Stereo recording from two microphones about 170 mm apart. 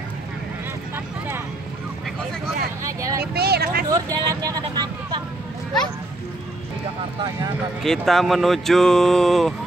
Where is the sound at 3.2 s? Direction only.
70° right (ahead or behind).